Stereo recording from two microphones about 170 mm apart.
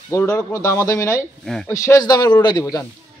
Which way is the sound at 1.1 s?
5° left (ahead or behind).